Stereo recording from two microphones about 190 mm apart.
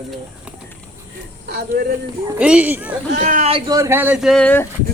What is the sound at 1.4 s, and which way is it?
Speech, 55° right (ahead or behind).